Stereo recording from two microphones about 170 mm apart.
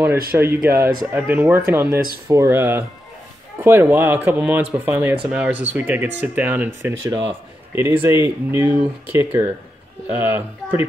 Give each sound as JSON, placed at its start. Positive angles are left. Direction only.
{"t": 0.4, "sound": "speech", "side_deg": -15}